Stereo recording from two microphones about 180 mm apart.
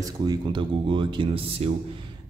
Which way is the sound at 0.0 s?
25° right (ahead or behind).